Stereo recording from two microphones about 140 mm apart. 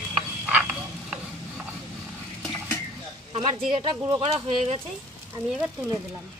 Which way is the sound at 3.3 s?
45° right (ahead or behind).